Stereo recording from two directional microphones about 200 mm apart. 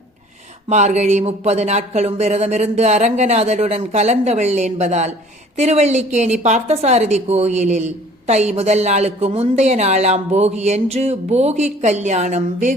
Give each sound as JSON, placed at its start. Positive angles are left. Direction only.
{"t": 0.7, "sound": "a woman's voice", "side_deg": -35}